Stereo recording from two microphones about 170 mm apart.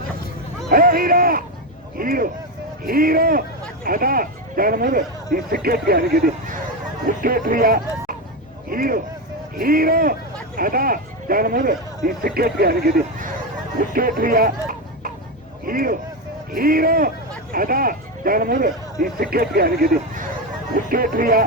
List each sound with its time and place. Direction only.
0.7 s speech: 60° right (ahead or behind)